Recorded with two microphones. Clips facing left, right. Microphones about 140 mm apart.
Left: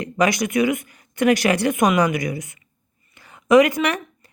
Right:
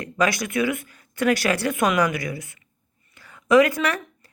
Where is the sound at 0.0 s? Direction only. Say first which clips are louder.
Left 3 dB; 20° left (ahead or behind).